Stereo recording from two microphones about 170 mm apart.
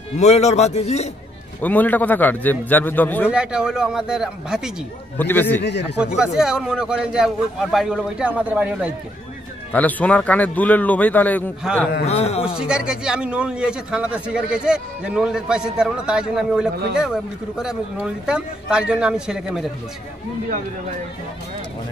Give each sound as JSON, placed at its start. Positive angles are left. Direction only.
{"t": 0.2, "sound": "a man's voice", "side_deg": 40}
{"t": 1.6, "sound": "speech", "side_deg": 10}
{"t": 3.3, "sound": "a man's voice", "side_deg": -5}
{"t": 5.1, "sound": "speech", "side_deg": 10}
{"t": 5.6, "sound": "speech", "side_deg": 90}
{"t": 5.9, "sound": "a man's voice", "side_deg": -5}
{"t": 9.7, "sound": "speech", "side_deg": 10}
{"t": 12.1, "sound": "a man's voice", "side_deg": 40}
{"t": 12.5, "sound": "a man's voice", "side_deg": -5}